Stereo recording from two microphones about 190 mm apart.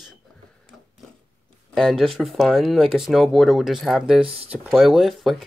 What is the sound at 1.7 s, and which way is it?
Speech, centre (ahead or behind).